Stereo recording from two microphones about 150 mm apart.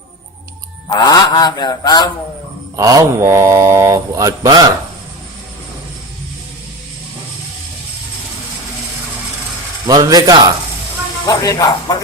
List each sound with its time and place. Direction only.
0.9 s mantra: 25° left (ahead or behind)
2.7 s speech: 25° right (ahead or behind)
9.8 s speech: 25° right (ahead or behind)
11.3 s mantra: 25° left (ahead or behind)